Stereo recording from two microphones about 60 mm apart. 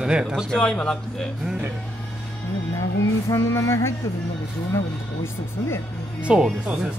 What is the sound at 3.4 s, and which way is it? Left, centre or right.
Music, left.